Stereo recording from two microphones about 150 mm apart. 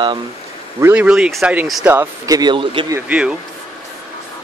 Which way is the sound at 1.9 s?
20° right (ahead or behind).